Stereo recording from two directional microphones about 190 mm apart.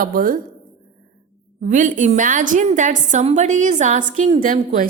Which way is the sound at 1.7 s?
40° right (ahead or behind).